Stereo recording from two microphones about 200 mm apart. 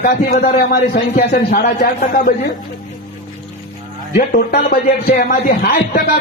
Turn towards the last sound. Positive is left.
turn(degrees=45)  # may be behind; listen again after turning